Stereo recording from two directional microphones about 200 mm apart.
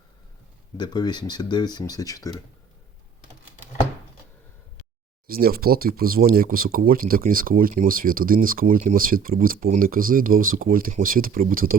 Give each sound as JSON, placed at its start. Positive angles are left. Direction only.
{"t": 0.8, "sound": "speech", "side_deg": 20}
{"t": 5.3, "sound": "speech", "side_deg": -50}